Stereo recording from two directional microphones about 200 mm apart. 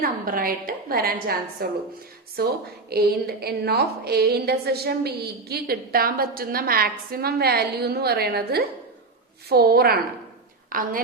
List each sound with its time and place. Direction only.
0.0 s a woman's voice: 45° right (ahead or behind)